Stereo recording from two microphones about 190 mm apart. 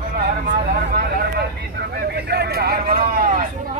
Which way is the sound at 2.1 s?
60° right (ahead or behind).